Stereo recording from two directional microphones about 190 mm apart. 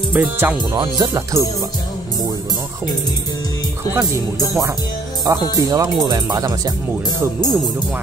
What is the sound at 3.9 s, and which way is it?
Music, 15° right (ahead or behind).